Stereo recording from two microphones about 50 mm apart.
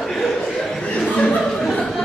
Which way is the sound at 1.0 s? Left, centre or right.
Centre.